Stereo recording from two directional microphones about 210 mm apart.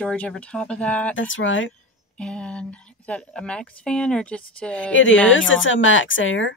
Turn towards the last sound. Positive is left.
turn(degrees=65)  # may be behind; listen again after turning